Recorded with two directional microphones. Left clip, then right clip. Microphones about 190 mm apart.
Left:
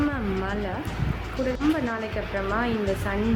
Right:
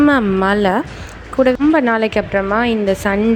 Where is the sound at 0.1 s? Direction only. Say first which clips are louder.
Right 15 dB; 55° right (ahead or behind).